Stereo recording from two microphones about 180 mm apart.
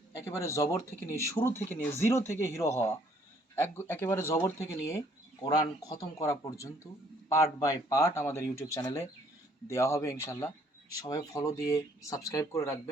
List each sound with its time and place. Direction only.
0.2 s speech: 15° left (ahead or behind)